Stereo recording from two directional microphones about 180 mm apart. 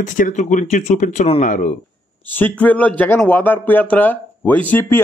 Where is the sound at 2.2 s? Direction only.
10° left (ahead or behind).